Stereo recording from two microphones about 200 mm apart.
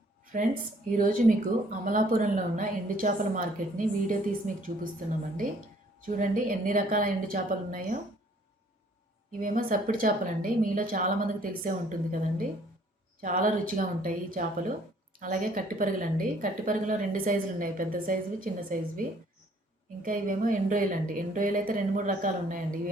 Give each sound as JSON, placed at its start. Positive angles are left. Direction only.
{"t": 0.9, "sound": "a woman's voice", "side_deg": -45}
{"t": 9.4, "sound": "a woman's voice", "side_deg": -45}